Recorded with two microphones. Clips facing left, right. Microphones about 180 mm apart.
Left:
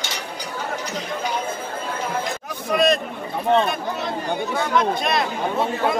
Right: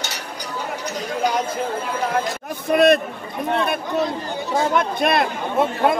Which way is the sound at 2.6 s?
60° right (ahead or behind).